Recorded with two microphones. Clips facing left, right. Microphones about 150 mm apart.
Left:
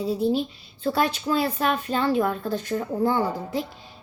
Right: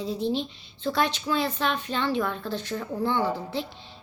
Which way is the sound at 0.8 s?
40° left (ahead or behind).